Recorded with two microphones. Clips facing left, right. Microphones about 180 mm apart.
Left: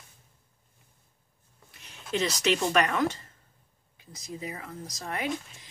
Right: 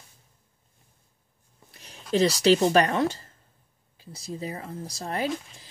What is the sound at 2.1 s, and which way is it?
Speech, 35° right (ahead or behind).